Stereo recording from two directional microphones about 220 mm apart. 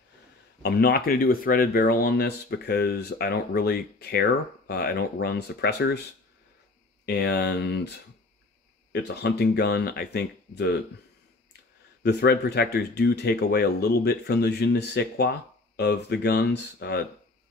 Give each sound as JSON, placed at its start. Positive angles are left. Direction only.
{"t": 0.6, "sound": "speech", "side_deg": 45}
{"t": 7.1, "sound": "speech", "side_deg": 50}
{"t": 8.9, "sound": "speech", "side_deg": 50}
{"t": 12.0, "sound": "speech", "side_deg": 50}